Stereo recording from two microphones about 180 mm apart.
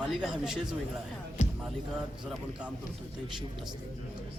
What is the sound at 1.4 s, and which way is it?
Music, 40° left (ahead or behind).